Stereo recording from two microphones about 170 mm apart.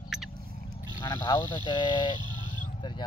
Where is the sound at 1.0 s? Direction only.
25° left (ahead or behind).